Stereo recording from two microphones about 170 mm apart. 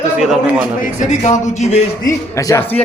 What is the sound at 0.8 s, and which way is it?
Speech, 45° left (ahead or behind).